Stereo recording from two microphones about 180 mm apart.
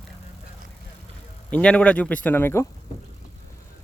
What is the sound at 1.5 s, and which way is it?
Speech, 5° left (ahead or behind).